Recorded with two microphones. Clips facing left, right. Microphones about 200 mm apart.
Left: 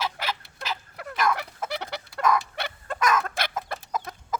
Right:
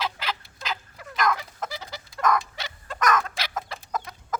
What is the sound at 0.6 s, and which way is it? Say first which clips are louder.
Fowl: left 1 dB; 70° left (ahead or behind).